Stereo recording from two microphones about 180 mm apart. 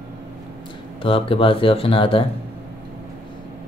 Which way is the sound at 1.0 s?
30° left (ahead or behind).